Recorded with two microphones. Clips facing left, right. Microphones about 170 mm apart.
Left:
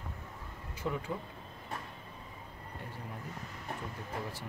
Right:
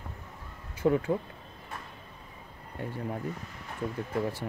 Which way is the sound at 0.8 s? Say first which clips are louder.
Right 11 dB; 65° right (ahead or behind).